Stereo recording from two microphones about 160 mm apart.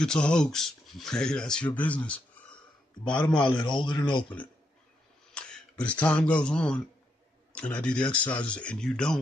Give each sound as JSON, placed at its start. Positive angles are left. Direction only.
{"t": 0.0, "sound": "speech", "side_deg": 5}
{"t": 3.3, "sound": "a man's voice", "side_deg": 30}
{"t": 5.3, "sound": "speech", "side_deg": 5}